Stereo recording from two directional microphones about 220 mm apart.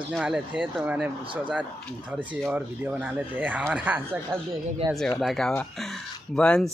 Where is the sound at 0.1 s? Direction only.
5° right (ahead or behind).